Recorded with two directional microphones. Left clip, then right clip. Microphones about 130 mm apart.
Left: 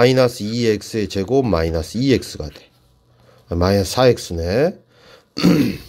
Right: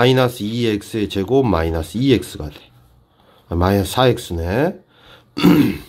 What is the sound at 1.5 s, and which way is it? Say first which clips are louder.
Speech: even; 45° left (ahead or behind).